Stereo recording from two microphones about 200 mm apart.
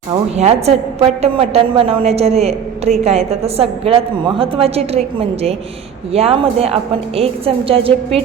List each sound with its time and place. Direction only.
0.1 s a woman's voice: 30° right (ahead or behind)